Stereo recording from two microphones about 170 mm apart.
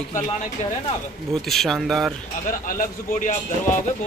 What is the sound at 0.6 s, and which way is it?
Speech, 45° left (ahead or behind).